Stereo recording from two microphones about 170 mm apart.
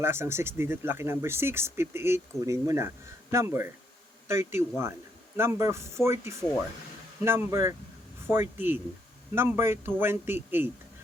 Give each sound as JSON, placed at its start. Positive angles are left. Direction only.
{"t": 0.0, "sound": "speech", "side_deg": -15}